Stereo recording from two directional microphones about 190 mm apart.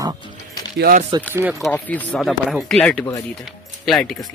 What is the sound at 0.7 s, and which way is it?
Speech, 50° right (ahead or behind).